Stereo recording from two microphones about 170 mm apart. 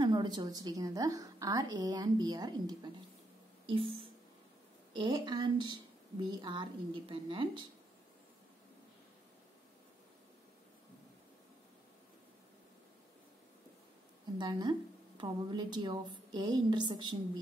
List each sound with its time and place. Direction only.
0.0 s a woman's voice: 25° right (ahead or behind)
14.4 s a woman's voice: 25° right (ahead or behind)